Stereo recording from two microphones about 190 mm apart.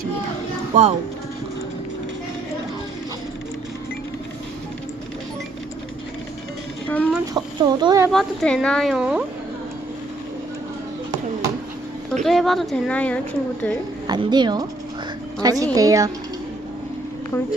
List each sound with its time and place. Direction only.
0.7 s speech: 35° right (ahead or behind)
6.8 s a sound: 10° left (ahead or behind)
7.3 s a woman's voice: 20° right (ahead or behind)
8.1 s a woman's voice: centre (ahead or behind)
12.2 s a woman's voice: centre (ahead or behind)
14.1 s a woman's voice: 25° right (ahead or behind)
17.3 s a woman's voice: 15° left (ahead or behind)